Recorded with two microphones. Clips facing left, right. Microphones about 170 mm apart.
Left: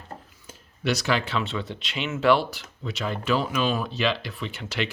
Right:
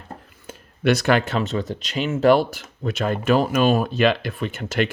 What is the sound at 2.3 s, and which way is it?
Speech, 45° right (ahead or behind).